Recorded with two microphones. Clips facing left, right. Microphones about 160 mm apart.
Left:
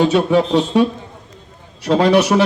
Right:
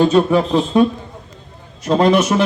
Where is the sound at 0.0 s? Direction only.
75° left (ahead or behind).